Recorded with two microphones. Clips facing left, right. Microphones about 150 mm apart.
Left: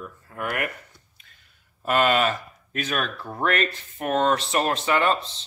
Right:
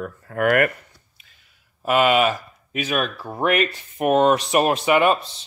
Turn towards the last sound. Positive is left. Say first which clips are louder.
# right 5 dB
turn(degrees=-15)  # may be behind; listen again after turning